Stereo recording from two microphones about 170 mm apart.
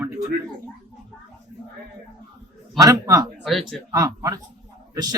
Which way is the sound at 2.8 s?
20° right (ahead or behind).